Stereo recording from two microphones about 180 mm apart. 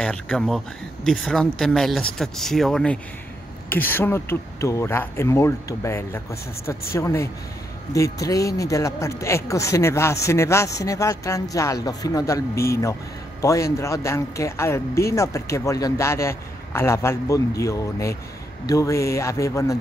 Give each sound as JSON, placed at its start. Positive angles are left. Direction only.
{"t": 0.0, "sound": "speech", "side_deg": 5}